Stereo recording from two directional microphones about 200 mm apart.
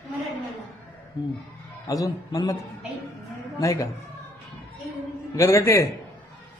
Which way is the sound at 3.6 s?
15° left (ahead or behind).